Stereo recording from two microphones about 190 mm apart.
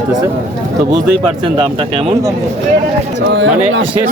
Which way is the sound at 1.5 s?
25° right (ahead or behind).